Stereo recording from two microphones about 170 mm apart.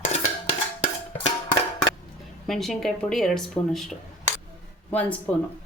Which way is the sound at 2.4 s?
Centre (ahead or behind).